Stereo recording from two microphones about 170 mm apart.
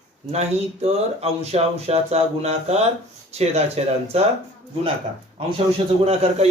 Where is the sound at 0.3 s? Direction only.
40° right (ahead or behind).